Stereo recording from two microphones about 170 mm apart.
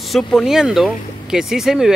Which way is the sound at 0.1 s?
Centre (ahead or behind).